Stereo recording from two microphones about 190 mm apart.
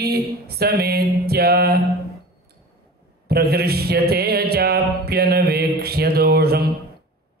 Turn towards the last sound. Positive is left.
turn(degrees=-55)  # may be behind; listen again after turning